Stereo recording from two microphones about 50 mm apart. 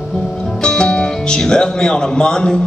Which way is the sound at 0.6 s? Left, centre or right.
Centre.